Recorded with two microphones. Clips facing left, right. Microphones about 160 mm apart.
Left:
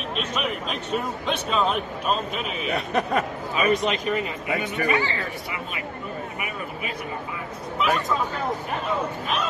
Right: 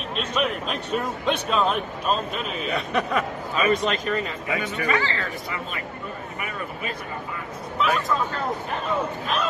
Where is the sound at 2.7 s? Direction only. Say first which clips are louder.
Left 1 dB; 35° left (ahead or behind).